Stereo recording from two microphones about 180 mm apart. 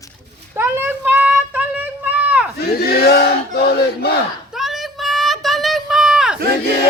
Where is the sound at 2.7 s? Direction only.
60° left (ahead or behind).